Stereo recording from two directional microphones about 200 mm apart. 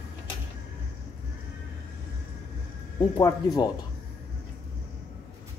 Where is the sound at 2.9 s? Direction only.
20° left (ahead or behind).